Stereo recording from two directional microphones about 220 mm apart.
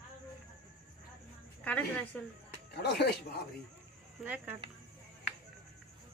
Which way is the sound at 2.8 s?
45° left (ahead or behind).